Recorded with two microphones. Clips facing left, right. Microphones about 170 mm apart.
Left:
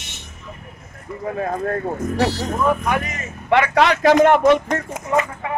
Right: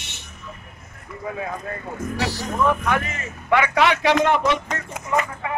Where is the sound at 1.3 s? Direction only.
50° left (ahead or behind).